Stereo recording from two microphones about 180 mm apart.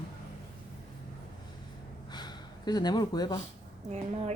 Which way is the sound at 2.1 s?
25° left (ahead or behind).